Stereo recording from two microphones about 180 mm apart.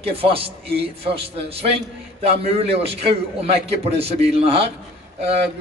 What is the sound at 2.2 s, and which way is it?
A man's voice, 35° right (ahead or behind).